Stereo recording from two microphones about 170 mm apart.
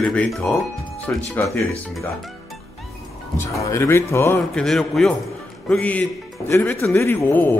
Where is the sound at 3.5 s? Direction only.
15° left (ahead or behind).